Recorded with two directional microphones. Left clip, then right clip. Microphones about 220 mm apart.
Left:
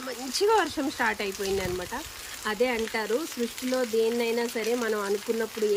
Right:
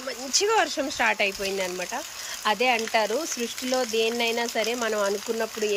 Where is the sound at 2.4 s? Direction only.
Centre (ahead or behind).